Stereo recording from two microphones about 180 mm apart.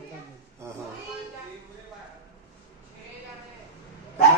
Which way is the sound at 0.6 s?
15° right (ahead or behind).